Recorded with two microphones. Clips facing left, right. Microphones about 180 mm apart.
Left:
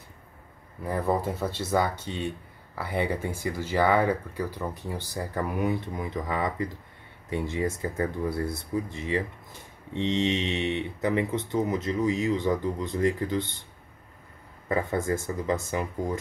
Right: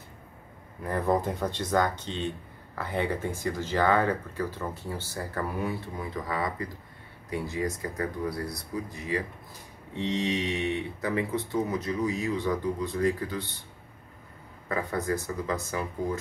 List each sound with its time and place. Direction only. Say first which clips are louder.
0.8 s speech: even; 10° left (ahead or behind)
15.0 s speech: left 2 dB; 20° left (ahead or behind)